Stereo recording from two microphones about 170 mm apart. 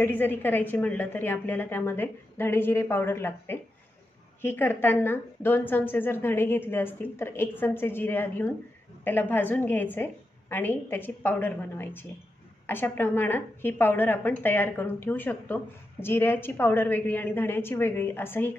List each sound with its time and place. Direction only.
0.0 s a woman's voice: 10° left (ahead or behind)